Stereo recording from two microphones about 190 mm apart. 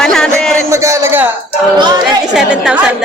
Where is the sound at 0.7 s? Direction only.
15° right (ahead or behind).